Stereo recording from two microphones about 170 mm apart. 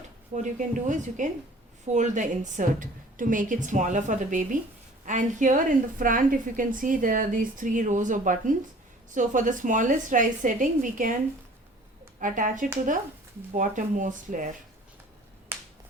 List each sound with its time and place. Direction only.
0.3 s a woman's voice: 45° right (ahead or behind)
12.2 s a woman's voice: 50° right (ahead or behind)
15.5 s finger snapping: 15° right (ahead or behind)